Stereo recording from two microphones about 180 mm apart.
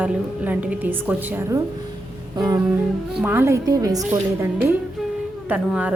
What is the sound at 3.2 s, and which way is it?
Speech, 10° right (ahead or behind).